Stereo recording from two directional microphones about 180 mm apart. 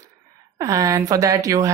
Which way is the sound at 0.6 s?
15° right (ahead or behind).